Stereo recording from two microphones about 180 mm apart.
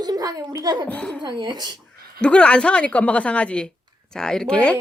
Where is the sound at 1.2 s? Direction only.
25° right (ahead or behind).